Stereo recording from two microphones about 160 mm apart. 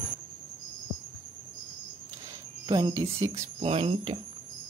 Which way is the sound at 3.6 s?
35° right (ahead or behind).